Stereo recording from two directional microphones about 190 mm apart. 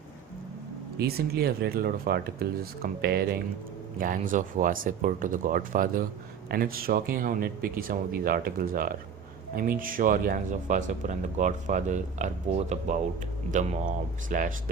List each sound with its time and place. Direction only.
0.9 s speech: 55° right (ahead or behind)
4.0 s speech: 45° right (ahead or behind)